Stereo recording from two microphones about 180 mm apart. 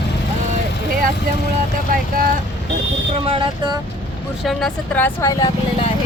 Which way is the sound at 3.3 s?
25° right (ahead or behind).